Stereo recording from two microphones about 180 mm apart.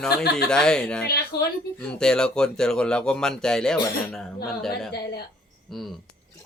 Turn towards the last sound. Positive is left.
turn(degrees=0)  # may be behind; listen again after turning